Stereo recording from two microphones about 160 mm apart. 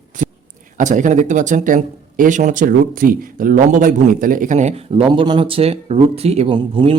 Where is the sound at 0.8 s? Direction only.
50° right (ahead or behind).